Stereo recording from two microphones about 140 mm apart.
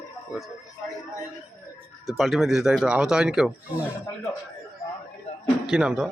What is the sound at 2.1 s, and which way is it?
Speech, centre (ahead or behind).